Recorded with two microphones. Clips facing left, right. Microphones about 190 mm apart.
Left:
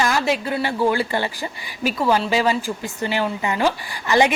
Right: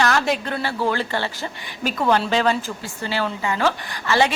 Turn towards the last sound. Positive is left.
turn(degrees=15)  # may be behind; listen again after turning